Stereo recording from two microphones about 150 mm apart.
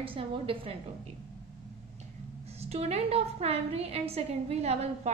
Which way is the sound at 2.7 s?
45° right (ahead or behind).